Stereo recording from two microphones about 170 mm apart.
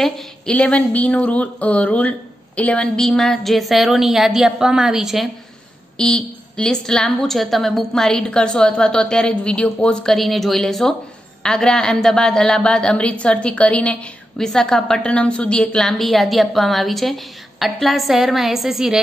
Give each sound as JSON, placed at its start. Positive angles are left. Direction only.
{"t": 0.0, "sound": "speech", "side_deg": 5}